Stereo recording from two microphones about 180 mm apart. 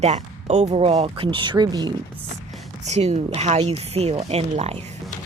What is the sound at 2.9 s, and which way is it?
Speech, 35° right (ahead or behind).